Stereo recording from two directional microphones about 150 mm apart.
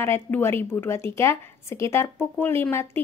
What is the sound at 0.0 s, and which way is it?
A woman's voice, 15° left (ahead or behind).